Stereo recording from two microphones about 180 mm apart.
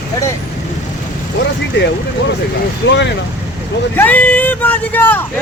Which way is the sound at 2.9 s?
75° left (ahead or behind).